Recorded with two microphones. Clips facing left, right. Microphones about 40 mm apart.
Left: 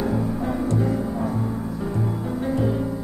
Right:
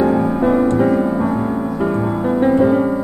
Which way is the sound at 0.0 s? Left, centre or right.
Right.